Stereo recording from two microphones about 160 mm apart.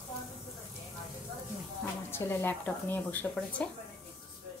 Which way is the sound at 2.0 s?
15° left (ahead or behind).